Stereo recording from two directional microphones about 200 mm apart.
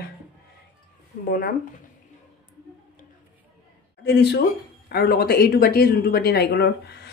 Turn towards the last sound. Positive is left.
turn(degrees=55)  # may be behind; listen again after turning